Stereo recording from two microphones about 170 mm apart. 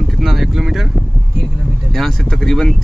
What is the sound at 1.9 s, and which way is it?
Speech, centre (ahead or behind).